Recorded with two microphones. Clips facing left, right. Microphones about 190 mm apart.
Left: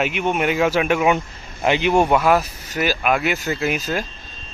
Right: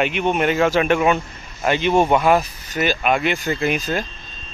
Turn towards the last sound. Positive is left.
turn(degrees=5)  # may be behind; listen again after turning